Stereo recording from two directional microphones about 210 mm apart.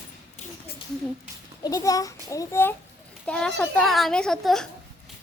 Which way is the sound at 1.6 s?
15° left (ahead or behind).